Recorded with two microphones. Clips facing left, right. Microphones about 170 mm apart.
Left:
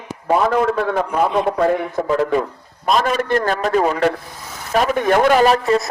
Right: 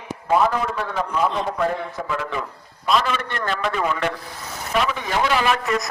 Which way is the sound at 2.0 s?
40° left (ahead or behind).